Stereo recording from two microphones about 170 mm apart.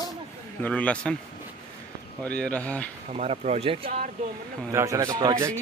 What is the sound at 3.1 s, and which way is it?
Speech, 40° right (ahead or behind).